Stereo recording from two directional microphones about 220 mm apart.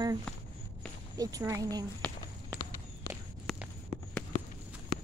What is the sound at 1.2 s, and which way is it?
Speech, 15° right (ahead or behind).